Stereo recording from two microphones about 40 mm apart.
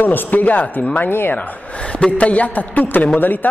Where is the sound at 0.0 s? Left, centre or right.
Left.